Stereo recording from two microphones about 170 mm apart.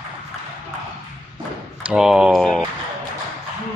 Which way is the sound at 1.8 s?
5° right (ahead or behind).